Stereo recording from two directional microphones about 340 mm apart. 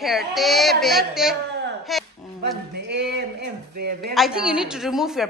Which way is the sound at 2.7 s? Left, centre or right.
Right.